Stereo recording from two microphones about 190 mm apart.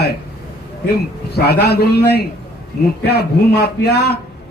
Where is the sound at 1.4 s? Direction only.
55° left (ahead or behind).